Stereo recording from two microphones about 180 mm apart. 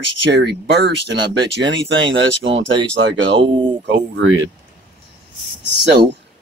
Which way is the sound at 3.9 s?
90° right.